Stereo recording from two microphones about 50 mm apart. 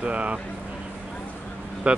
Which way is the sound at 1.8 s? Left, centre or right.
Right.